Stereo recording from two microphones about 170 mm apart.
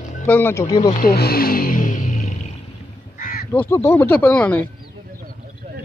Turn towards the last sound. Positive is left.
turn(degrees=-40)  # may be behind; listen again after turning